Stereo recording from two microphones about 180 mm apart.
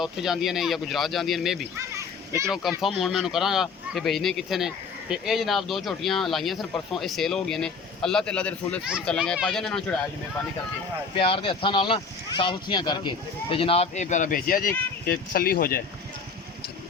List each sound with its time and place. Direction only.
0.0 s speech: centre (ahead or behind)
1.7 s a sound: 15° right (ahead or behind)
2.5 s speech: centre (ahead or behind)
8.8 s speech: 5° right (ahead or behind)
11.2 s speech: 30° left (ahead or behind); by 15.8 s 55° left (ahead or behind)